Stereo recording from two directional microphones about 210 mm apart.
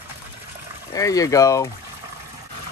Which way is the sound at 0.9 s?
15° left (ahead or behind).